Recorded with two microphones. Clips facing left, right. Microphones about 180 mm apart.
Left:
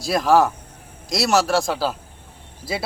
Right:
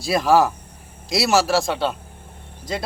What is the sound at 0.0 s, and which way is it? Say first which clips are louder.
Speech: even; centre (ahead or behind).